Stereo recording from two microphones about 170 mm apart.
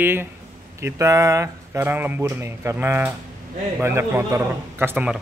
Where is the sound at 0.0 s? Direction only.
15° right (ahead or behind).